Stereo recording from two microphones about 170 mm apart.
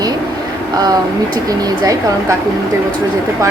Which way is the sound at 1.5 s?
20° right (ahead or behind).